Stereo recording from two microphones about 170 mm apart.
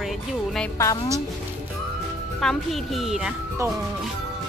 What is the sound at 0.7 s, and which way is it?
Speech, 20° left (ahead or behind).